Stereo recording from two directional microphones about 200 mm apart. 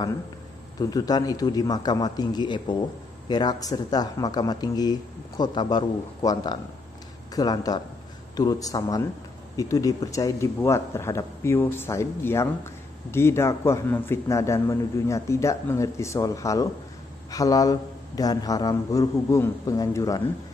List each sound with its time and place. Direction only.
0.7 s a man's voice: 20° left (ahead or behind)